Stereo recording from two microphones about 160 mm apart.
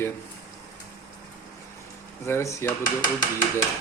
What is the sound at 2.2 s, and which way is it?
Speech, 15° left (ahead or behind).